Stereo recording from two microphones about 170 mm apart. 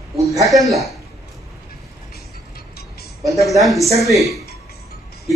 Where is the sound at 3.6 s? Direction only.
Centre (ahead or behind).